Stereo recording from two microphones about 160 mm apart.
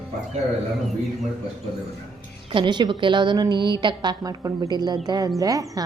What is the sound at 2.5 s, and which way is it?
A woman's voice, 30° right (ahead or behind).